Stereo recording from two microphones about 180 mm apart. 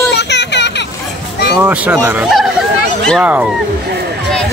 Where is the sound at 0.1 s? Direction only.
70° left (ahead or behind).